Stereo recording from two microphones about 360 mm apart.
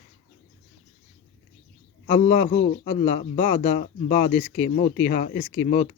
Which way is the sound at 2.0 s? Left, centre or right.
Centre.